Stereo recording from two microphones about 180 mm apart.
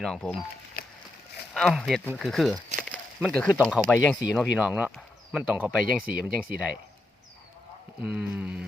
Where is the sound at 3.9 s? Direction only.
5° left (ahead or behind).